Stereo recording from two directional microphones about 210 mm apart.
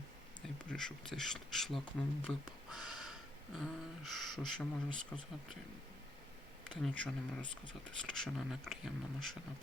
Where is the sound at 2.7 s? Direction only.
Centre (ahead or behind).